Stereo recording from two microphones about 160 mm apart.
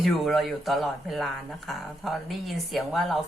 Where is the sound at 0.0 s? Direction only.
Centre (ahead or behind).